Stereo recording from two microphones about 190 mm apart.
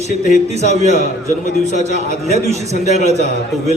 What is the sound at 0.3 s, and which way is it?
A man's voice, 35° right (ahead or behind).